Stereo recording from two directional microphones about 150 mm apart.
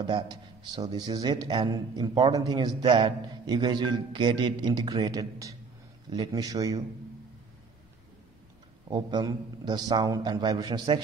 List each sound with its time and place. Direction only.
0.0 s a man's voice: 30° right (ahead or behind)
8.8 s a man's voice: 30° right (ahead or behind)